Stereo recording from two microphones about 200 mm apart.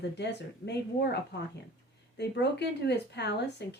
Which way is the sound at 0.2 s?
60° left (ahead or behind).